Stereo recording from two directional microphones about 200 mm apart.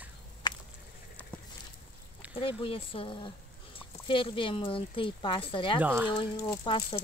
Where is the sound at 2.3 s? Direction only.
25° left (ahead or behind).